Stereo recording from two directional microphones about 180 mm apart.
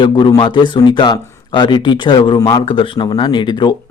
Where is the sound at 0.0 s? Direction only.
25° left (ahead or behind).